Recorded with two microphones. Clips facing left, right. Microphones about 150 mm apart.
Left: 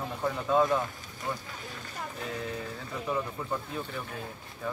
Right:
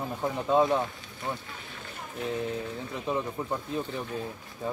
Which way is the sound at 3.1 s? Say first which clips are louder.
Right 2 dB; 25° right (ahead or behind).